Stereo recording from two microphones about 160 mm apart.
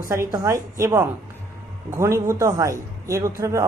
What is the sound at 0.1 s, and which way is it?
A man's voice, 20° right (ahead or behind).